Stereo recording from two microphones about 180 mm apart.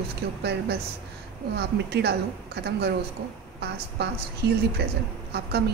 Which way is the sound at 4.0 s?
65° right (ahead or behind).